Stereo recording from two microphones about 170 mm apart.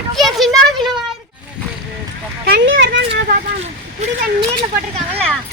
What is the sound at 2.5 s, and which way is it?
Speech, 90° right.